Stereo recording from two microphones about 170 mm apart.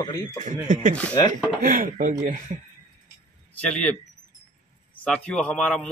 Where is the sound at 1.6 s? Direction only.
50° right (ahead or behind).